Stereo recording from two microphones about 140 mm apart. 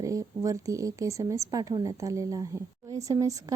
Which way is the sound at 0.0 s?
25° right (ahead or behind).